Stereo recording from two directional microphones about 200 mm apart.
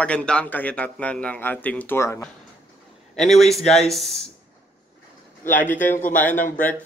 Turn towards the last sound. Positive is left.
turn(degrees=40)  # may be behind; listen again after turning